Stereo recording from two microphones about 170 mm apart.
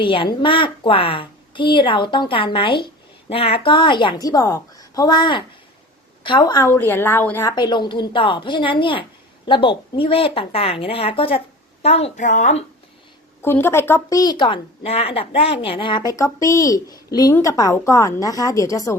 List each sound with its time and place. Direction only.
0.0 s a woman's voice: 30° left (ahead or behind); by 7.5 s 10° left (ahead or behind)
7.5 s a woman's voice: 25° left (ahead or behind); by 12.6 s 45° left (ahead or behind)
13.4 s a woman's voice: 15° left (ahead or behind)